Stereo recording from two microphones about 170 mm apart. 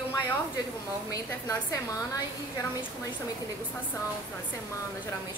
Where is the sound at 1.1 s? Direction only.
20° left (ahead or behind).